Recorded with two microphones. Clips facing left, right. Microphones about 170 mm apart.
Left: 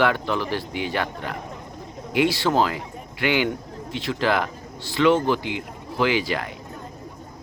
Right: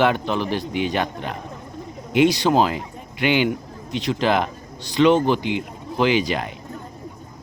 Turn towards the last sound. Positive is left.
turn(degrees=-20)  # may be behind; listen again after turning